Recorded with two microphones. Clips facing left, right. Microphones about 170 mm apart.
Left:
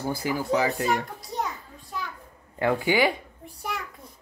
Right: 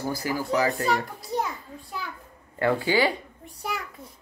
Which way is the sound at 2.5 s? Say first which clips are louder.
Even; 15° left (ahead or behind).